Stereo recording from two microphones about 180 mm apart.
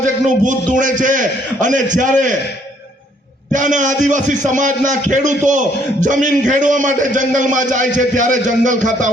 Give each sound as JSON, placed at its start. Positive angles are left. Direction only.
{"t": 0.4, "sound": "a man's voice", "side_deg": -45}
{"t": 3.5, "sound": "a man's voice", "side_deg": -45}